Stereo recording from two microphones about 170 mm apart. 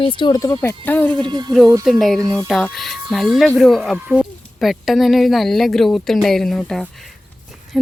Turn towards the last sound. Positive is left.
turn(degrees=5)  # may be behind; listen again after turning